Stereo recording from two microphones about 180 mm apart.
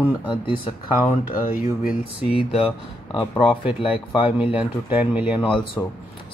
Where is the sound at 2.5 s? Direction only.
30° left (ahead or behind).